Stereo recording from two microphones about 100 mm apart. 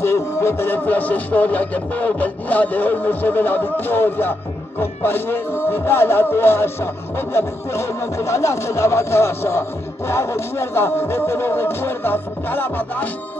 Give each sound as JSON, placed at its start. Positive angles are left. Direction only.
{"t": 0.0, "sound": "speech", "side_deg": 25}